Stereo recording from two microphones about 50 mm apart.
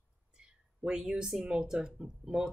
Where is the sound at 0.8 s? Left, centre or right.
Centre.